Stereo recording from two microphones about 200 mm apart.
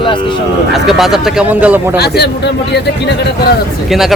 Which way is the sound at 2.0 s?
55° left (ahead or behind).